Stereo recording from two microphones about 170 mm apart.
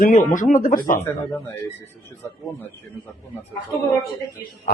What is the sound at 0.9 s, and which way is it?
Speech, 15° left (ahead or behind).